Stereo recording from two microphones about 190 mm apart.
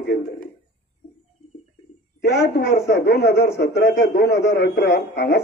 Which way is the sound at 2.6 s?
60° left (ahead or behind).